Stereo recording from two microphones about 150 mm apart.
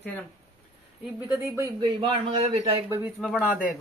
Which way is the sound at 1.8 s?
35° right (ahead or behind).